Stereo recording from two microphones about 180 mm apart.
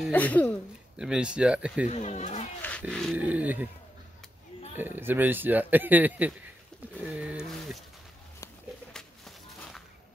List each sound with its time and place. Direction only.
0.0 s speech: 10° left (ahead or behind)
0.9 s speech: 5° right (ahead or behind)
1.9 s speech: 40° left (ahead or behind)
2.6 s speech: 5° left (ahead or behind)
3.2 s speech: 10° right (ahead or behind)
4.7 s speech: 10° right (ahead or behind)
8.9 s a sound: centre (ahead or behind)